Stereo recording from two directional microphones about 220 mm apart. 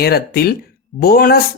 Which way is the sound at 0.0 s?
45° left (ahead or behind).